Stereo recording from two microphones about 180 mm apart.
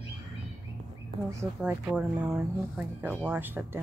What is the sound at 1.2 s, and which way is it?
Speech, 15° right (ahead or behind).